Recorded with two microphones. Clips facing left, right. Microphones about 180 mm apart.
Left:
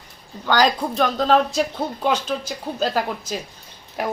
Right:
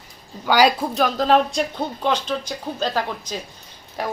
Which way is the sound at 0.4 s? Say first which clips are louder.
Right 2 dB; 10° right (ahead or behind).